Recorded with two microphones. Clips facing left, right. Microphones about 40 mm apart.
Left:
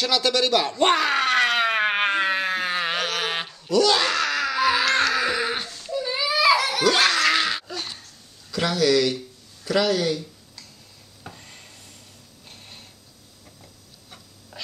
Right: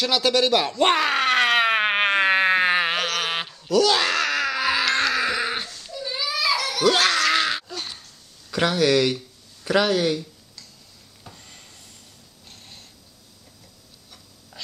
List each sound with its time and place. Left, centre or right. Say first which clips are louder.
0.0 s groan: right 1 dB; centre; by 2.9 s right
2.9 s a sound: right 1 dB; centre
5.9 s children playing: left 5 dB; centre
6.8 s a sound: even; centre
8.5 s speech: right 1 dB; right
11.2 s rub: left 3 dB; centre
12.4 s mechanisms: left 1 dB; centre